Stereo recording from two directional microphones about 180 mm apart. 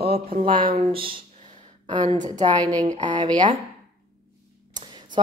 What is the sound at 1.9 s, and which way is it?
Speech, 25° right (ahead or behind).